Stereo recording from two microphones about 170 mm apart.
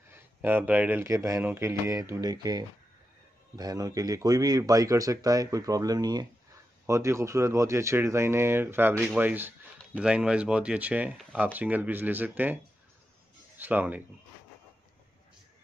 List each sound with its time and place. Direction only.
0.1 s speech: 10° right (ahead or behind)
13.6 s speech: 10° right (ahead or behind)